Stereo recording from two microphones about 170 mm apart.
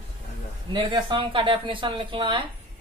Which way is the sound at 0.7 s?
30° right (ahead or behind).